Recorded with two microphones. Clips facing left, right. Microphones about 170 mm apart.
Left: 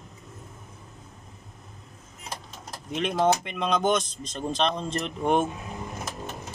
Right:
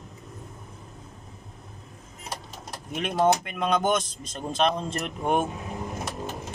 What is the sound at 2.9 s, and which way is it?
Speech, 5° right (ahead or behind).